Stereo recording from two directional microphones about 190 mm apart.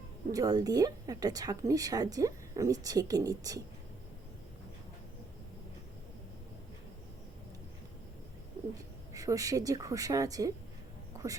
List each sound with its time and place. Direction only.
0.3 s speech: 20° right (ahead or behind)
9.1 s a woman's voice: 20° right (ahead or behind)
11.1 s music: 15° right (ahead or behind)